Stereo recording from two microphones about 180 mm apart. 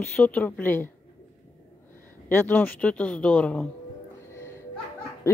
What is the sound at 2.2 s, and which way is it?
Speech, 10° left (ahead or behind).